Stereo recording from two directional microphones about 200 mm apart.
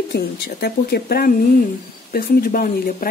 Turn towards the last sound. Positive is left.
turn(degrees=45)  # may be behind; listen again after turning